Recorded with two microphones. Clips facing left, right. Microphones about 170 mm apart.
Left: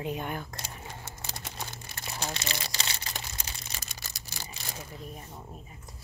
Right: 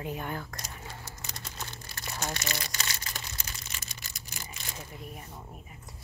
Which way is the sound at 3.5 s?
35° left (ahead or behind).